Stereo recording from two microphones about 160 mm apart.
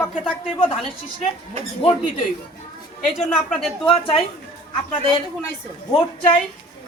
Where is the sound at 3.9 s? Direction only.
35° left (ahead or behind).